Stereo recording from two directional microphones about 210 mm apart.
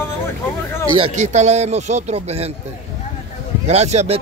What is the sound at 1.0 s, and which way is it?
Speech, 35° right (ahead or behind).